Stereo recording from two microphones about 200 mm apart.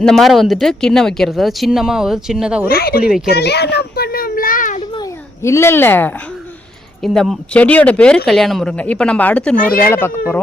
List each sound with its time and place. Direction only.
0.0 s speech: centre (ahead or behind)
2.6 s speech: 50° left (ahead or behind)
3.0 s speech: 5° right (ahead or behind)
3.2 s a sound: 55° left (ahead or behind)
4.9 s babbling: 15° left (ahead or behind)
7.0 s speech: centre (ahead or behind)
9.6 s speech: 45° left (ahead or behind)
9.8 s speech: 10° left (ahead or behind)